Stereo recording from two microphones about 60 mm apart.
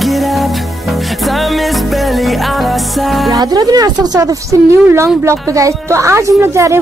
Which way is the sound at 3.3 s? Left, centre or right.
Right.